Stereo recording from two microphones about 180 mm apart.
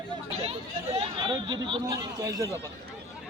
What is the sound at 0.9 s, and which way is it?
Speech, 25° right (ahead or behind).